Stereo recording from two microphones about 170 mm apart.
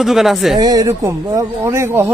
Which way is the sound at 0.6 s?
20° right (ahead or behind).